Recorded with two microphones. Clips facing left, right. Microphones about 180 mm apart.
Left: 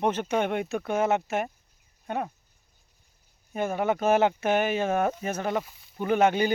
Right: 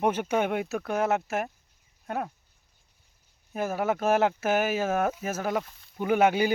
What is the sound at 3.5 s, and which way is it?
Speech, centre (ahead or behind).